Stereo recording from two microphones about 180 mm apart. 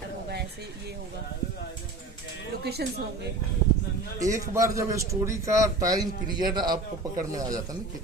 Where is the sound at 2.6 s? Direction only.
65° right (ahead or behind).